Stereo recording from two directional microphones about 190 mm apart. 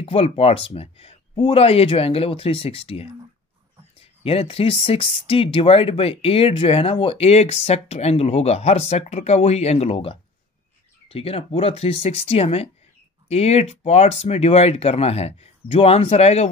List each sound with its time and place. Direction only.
0.0 s speech: 30° left (ahead or behind)